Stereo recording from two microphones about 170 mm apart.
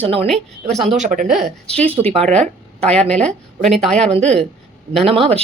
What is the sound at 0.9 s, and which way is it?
Speech, 45° right (ahead or behind).